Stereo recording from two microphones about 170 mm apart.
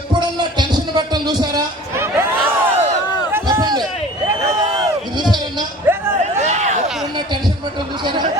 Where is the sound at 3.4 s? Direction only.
25° right (ahead or behind).